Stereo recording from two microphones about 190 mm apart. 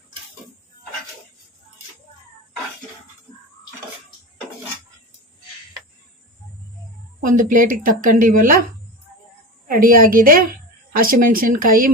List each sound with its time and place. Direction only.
7.2 s a woman's voice: 45° right (ahead or behind)
9.6 s a woman's voice: 50° right (ahead or behind)